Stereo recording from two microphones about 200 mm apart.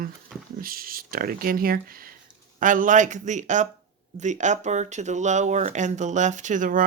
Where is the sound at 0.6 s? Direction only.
45° right (ahead or behind).